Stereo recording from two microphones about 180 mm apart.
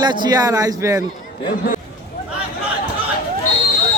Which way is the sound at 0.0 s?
20° right (ahead or behind).